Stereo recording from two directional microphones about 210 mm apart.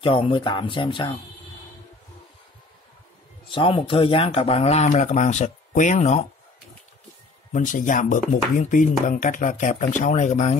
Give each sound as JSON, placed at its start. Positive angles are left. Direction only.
{"t": 0.0, "sound": "speech", "side_deg": 25}
{"t": 3.4, "sound": "speech", "side_deg": 25}
{"t": 7.5, "sound": "speech", "side_deg": 40}